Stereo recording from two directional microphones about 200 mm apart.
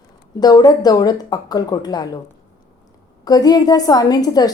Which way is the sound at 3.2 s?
20° left (ahead or behind).